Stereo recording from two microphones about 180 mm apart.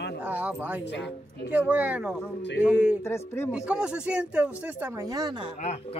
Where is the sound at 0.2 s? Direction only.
10° right (ahead or behind).